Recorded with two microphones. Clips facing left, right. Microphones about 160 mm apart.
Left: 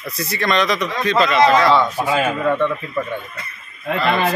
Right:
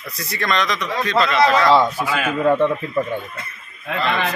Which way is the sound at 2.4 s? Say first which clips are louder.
Right 5 dB; 30° right (ahead or behind).